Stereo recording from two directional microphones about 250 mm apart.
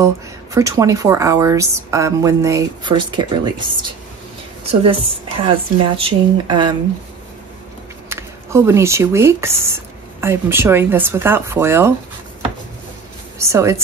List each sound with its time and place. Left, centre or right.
0.0 s speech: centre
8.1 s speech: centre
13.4 s speech: centre